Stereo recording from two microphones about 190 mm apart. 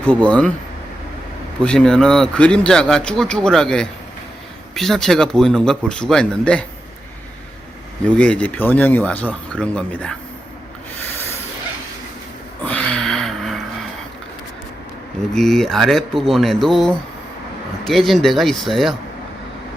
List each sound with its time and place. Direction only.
0.0 s speech: 5° left (ahead or behind)
1.6 s speech: 5° left (ahead or behind)
8.0 s speech: 5° left (ahead or behind)
12.6 s a sound: 5° left (ahead or behind)
15.3 s speech: centre (ahead or behind)